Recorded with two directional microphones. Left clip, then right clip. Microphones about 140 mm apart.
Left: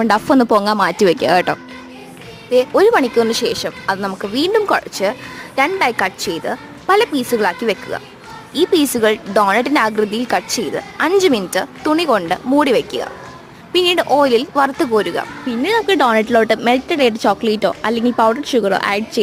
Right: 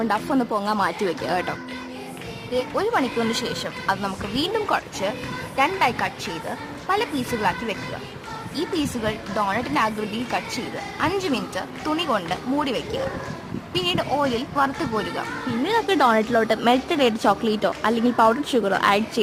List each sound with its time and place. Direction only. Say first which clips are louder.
0.0 s a woman's voice: left 9 dB; 50° left (ahead or behind); by 13.0 s 70° left (ahead or behind)
13.7 s speech: left 10 dB; 55° left (ahead or behind)
15.4 s a woman's voice: left 6 dB; 35° left (ahead or behind)